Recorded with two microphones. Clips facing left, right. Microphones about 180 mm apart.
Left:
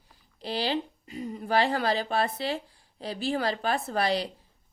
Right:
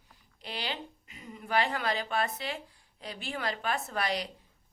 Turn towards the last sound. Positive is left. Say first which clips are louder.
# left 6 dB
turn(degrees=30)  # may be behind; listen again after turning